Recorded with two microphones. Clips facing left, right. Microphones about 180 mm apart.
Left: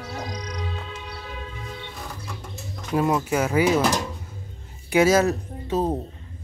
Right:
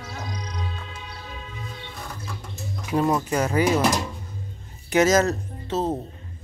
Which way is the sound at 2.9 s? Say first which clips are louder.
Even; 5° left (ahead or behind).